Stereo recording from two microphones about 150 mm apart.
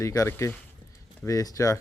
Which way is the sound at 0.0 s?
20° left (ahead or behind).